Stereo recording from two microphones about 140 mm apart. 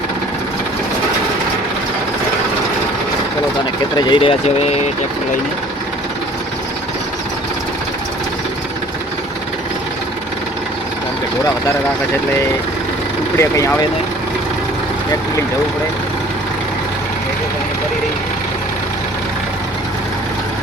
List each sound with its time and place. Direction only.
3.9 s speech: 35° left (ahead or behind)
13.4 s speech: 20° left (ahead or behind)